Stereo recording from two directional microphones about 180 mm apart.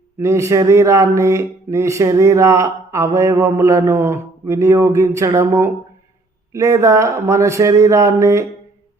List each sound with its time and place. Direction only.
0.2 s speech: 15° right (ahead or behind)